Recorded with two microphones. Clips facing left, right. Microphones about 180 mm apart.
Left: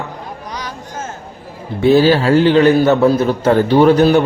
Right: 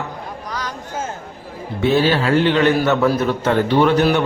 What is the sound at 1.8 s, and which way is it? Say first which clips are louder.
A man's voice: left 6 dB; 35° left (ahead or behind).